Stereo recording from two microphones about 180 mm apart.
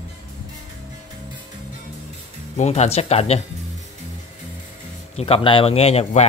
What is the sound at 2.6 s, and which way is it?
Speech, 40° left (ahead or behind).